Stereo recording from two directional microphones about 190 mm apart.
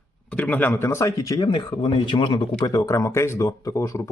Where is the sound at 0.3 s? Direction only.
5° left (ahead or behind).